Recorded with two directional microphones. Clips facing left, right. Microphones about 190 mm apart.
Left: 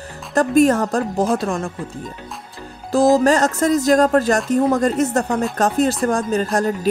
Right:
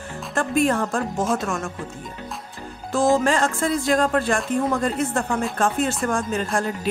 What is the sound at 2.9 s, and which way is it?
Speech, 40° left (ahead or behind).